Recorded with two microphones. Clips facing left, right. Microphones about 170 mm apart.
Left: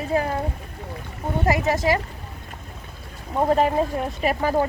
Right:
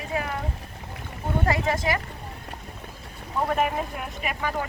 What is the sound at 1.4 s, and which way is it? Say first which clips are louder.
Speech: left 5 dB; 25° left (ahead or behind).